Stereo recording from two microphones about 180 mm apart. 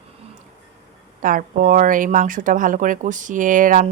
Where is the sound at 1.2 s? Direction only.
50° right (ahead or behind).